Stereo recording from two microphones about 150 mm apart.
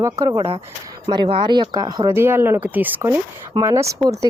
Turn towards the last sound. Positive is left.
turn(degrees=-25)  # may be behind; listen again after turning